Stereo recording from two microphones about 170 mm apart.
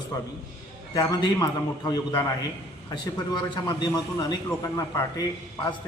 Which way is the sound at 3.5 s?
25° left (ahead or behind).